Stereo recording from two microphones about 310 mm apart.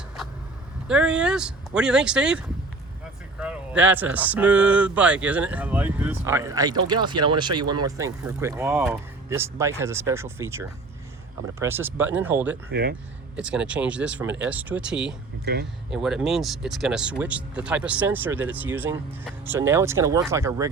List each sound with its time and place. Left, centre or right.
0.9 s speech: centre
12.7 s speech: right
13.3 s speech: centre